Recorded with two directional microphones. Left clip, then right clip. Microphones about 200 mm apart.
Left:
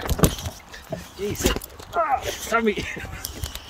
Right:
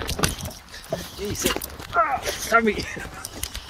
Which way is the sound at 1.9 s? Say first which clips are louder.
Right 1 dB; 20° left (ahead or behind).